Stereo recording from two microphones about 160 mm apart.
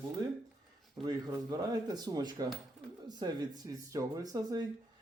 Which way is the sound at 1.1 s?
25° right (ahead or behind).